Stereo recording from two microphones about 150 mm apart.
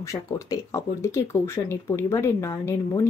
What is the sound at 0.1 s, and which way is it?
Speech, 20° left (ahead or behind).